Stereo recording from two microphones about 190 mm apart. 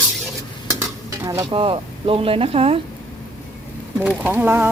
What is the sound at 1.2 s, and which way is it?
Stir, 15° right (ahead or behind).